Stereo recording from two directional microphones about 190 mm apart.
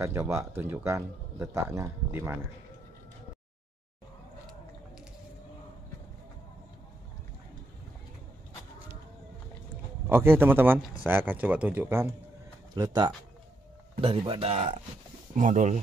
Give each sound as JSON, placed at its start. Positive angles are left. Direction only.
{"t": 0.0, "sound": "speech", "side_deg": -15}
{"t": 10.0, "sound": "speech", "side_deg": -10}